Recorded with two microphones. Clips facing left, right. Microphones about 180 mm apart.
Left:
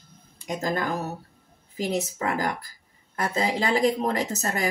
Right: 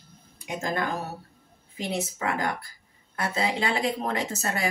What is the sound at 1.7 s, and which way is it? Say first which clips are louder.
Speech: left 3 dB; 40° left (ahead or behind).